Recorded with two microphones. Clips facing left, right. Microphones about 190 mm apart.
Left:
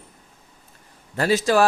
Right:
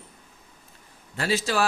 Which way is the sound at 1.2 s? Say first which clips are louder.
Left 7 dB; 45° left (ahead or behind).